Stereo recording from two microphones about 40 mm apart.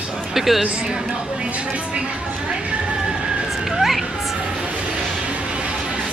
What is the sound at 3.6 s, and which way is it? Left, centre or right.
Music, centre.